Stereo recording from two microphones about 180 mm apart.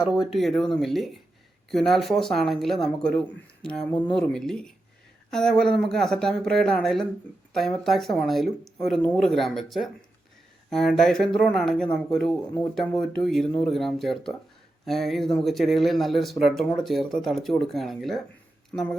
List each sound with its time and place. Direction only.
0.0 s speech: 5° right (ahead or behind)